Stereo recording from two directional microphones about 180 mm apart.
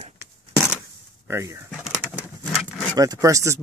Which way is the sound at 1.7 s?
5° left (ahead or behind).